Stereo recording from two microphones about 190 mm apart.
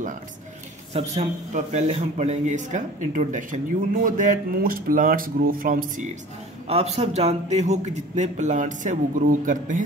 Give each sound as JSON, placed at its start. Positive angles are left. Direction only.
{"t": 0.9, "sound": "a man's voice", "side_deg": -35}
{"t": 6.7, "sound": "a man's voice", "side_deg": -35}